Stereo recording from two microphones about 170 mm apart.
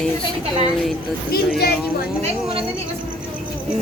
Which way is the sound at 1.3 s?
65° left (ahead or behind).